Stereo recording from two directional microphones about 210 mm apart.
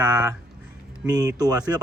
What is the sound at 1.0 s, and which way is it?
Speech, 20° right (ahead or behind).